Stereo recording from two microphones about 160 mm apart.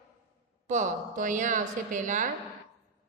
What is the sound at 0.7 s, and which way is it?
A woman's voice, 50° right (ahead or behind).